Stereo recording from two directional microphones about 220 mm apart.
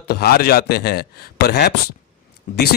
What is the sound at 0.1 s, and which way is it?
Speech, 45° left (ahead or behind).